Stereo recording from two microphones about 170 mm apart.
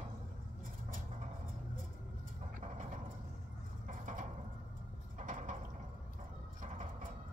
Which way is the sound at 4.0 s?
50° right (ahead or behind).